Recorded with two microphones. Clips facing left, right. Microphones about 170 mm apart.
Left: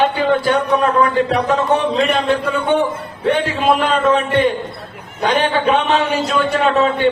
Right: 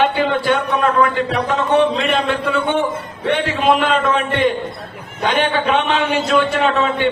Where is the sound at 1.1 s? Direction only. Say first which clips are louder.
Left 3 dB; 40° left (ahead or behind).